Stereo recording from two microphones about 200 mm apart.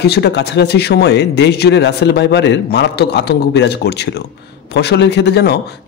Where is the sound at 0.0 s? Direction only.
55° left (ahead or behind).